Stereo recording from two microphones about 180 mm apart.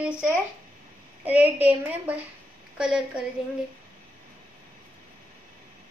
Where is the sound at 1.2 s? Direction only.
10° right (ahead or behind).